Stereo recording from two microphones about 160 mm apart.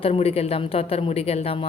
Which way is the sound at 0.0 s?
40° left (ahead or behind).